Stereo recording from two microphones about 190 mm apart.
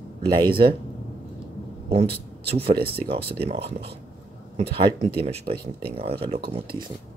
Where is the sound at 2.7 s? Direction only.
55° right (ahead or behind).